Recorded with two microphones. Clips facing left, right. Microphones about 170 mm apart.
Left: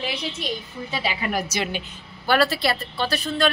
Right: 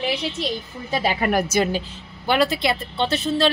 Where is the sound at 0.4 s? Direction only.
45° right (ahead or behind).